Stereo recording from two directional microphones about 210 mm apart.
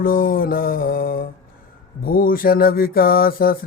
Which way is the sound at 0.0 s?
45° left (ahead or behind).